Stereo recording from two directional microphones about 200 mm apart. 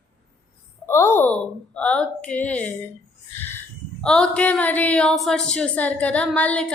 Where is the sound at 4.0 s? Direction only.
5° left (ahead or behind).